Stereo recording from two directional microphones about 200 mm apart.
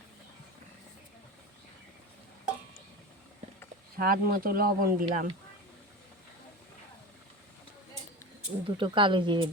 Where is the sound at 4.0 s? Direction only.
45° right (ahead or behind).